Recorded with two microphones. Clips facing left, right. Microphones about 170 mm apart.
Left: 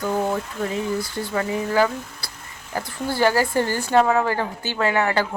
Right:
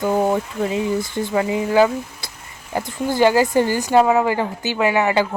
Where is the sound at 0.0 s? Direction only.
20° right (ahead or behind).